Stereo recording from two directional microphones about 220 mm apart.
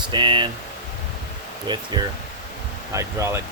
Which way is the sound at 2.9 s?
10° right (ahead or behind).